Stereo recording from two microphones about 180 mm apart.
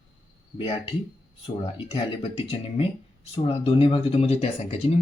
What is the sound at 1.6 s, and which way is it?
Speech, 35° left (ahead or behind).